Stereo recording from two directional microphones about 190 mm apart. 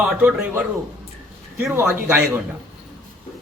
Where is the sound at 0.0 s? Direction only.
5° right (ahead or behind).